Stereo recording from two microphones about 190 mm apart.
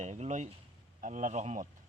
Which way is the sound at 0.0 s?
35° right (ahead or behind).